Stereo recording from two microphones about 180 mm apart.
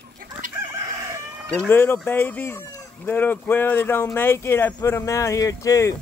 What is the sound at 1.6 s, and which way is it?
Speech, 10° left (ahead or behind).